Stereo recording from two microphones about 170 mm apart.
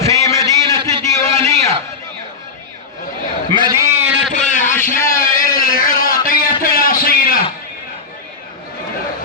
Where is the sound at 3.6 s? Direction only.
15° right (ahead or behind).